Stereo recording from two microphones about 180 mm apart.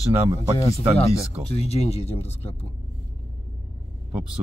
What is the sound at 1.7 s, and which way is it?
Speech, 35° left (ahead or behind).